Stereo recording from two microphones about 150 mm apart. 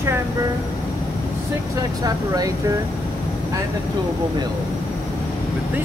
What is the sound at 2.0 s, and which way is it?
Speech, 25° right (ahead or behind).